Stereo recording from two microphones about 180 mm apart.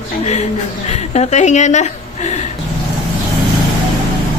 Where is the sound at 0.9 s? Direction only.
40° left (ahead or behind).